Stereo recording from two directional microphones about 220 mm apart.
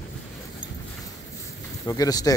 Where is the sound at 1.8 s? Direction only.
15° left (ahead or behind).